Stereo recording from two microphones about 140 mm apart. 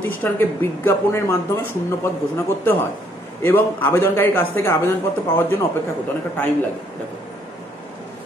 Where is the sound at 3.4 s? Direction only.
15° left (ahead or behind).